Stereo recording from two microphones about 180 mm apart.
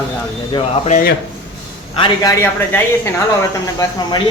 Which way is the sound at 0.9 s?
50° left (ahead or behind).